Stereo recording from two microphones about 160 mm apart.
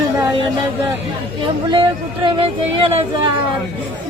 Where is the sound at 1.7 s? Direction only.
30° right (ahead or behind).